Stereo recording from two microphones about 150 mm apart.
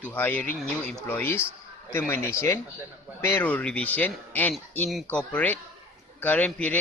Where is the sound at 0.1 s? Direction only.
10° left (ahead or behind).